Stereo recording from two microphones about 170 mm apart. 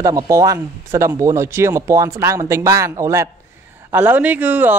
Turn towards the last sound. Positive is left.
turn(degrees=-10)  # may be behind; listen again after turning